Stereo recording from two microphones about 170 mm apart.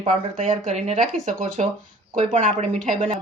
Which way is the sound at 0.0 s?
45° right (ahead or behind).